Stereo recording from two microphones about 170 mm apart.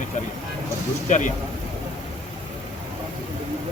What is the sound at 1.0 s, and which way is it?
Speech, 45° left (ahead or behind).